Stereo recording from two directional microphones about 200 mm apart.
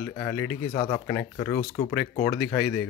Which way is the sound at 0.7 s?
25° left (ahead or behind).